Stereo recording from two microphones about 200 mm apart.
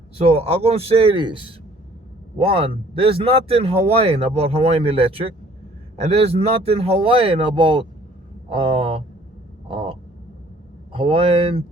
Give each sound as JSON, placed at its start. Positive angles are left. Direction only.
{"t": 0.2, "sound": "a man's voice", "side_deg": -30}
{"t": 9.6, "sound": "a sound", "side_deg": -25}
{"t": 10.9, "sound": "a man's voice", "side_deg": -30}